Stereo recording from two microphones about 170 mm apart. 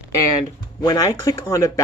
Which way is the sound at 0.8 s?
25° left (ahead or behind).